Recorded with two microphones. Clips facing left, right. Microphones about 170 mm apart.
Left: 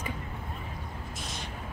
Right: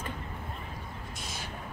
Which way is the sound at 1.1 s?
Centre (ahead or behind).